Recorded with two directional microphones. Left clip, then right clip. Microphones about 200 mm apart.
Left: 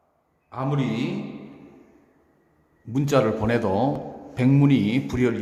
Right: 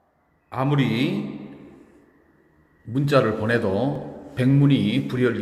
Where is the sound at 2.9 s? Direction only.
15° left (ahead or behind).